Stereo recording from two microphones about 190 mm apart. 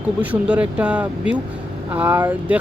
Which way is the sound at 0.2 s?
5° right (ahead or behind).